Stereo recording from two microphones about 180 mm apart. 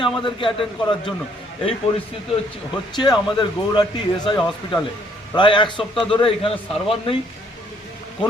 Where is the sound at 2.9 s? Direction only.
25° left (ahead or behind).